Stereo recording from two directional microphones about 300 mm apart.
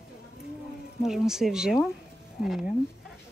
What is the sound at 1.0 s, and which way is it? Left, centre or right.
Speech, centre.